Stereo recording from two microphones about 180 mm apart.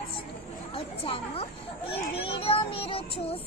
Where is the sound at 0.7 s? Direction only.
30° left (ahead or behind).